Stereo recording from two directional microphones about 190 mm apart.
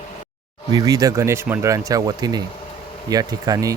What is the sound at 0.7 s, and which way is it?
Speech, 20° right (ahead or behind).